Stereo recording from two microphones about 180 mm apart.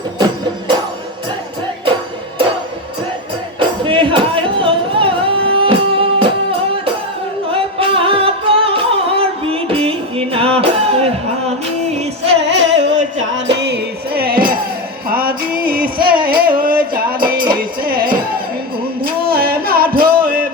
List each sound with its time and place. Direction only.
3.6 s music: 30° right (ahead or behind)
12.4 s music: 80° right; by 18.3 s 55° right (ahead or behind)
19.3 s music: 55° right (ahead or behind)